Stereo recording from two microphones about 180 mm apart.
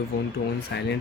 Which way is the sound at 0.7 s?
70° left (ahead or behind).